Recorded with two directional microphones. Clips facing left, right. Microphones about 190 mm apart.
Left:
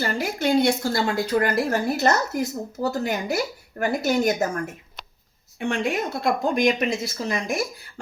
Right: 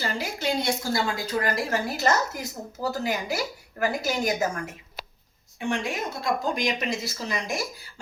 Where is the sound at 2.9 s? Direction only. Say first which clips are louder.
Left 2 dB; 50° left (ahead or behind).